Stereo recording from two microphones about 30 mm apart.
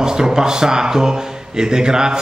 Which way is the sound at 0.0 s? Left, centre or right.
Right.